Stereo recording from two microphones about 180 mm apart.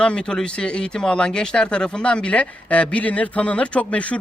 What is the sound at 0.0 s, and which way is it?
Speech, 5° left (ahead or behind).